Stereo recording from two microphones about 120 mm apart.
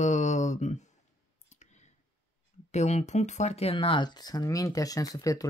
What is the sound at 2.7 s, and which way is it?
Speech, 65° left (ahead or behind).